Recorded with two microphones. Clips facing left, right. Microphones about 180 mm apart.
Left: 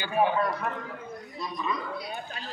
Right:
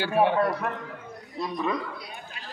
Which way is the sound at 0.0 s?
75° right (ahead or behind).